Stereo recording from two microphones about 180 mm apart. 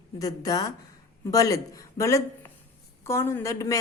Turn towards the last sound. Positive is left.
turn(degrees=15)  # may be behind; listen again after turning